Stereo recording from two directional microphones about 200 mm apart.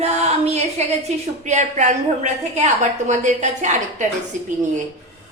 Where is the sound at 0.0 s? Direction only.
35° right (ahead or behind).